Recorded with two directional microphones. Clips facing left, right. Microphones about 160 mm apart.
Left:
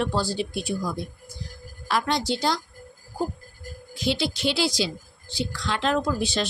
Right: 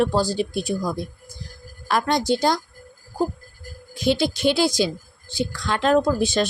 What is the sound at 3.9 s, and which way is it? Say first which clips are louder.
Speech: right 5 dB; 50° right (ahead or behind).